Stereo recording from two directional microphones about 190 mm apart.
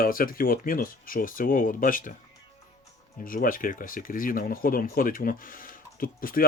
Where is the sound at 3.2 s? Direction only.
45° left (ahead or behind).